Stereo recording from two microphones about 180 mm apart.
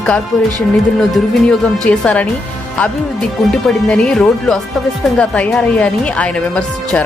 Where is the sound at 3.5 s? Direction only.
5° left (ahead or behind).